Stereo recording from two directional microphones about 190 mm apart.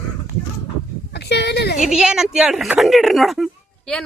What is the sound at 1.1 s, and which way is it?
Speech, 65° left (ahead or behind).